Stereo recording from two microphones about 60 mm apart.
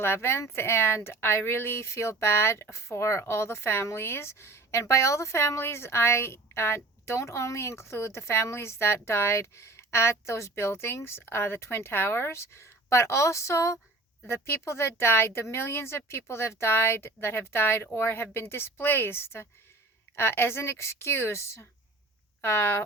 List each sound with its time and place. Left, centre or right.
0.0 s a woman's voice: left
14.3 s a woman's voice: left